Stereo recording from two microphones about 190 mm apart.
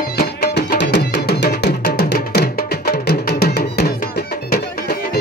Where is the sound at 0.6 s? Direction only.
60° left (ahead or behind).